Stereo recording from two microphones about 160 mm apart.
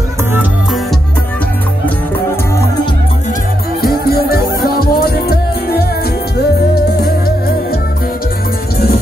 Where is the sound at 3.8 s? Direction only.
75° left (ahead or behind).